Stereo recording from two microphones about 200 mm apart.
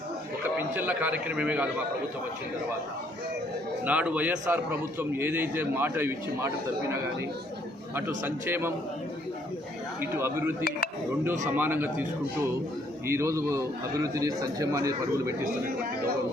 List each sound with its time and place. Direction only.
0.4 s a man's voice: 10° right (ahead or behind)
3.8 s a man's voice: 5° right (ahead or behind)
10.0 s a man's voice: 10° right (ahead or behind)
10.6 s speech: 50° left (ahead or behind)
11.4 s a man's voice: 10° right (ahead or behind)
13.1 s a man's voice: 15° right (ahead or behind)